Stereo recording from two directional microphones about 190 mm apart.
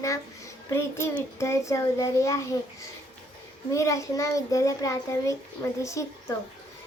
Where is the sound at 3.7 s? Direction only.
15° left (ahead or behind).